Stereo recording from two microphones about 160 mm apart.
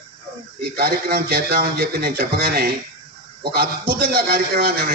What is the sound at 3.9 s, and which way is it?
Speech, 65° right (ahead or behind).